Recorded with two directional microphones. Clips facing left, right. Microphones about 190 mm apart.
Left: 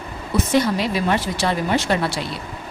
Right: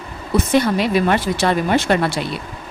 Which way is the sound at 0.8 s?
60° right (ahead or behind).